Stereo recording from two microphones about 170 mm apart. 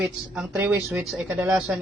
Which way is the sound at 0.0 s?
15° right (ahead or behind).